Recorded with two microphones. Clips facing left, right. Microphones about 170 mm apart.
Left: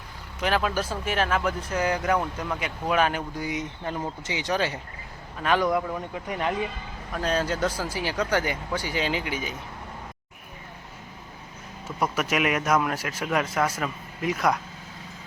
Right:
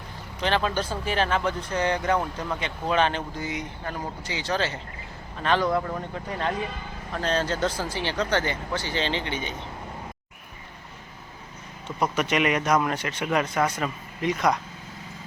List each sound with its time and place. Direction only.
0.3 s speech: 5° left (ahead or behind)
11.9 s speech: centre (ahead or behind)